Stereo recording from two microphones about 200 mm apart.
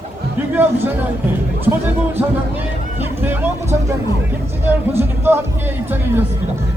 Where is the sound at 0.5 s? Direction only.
10° right (ahead or behind).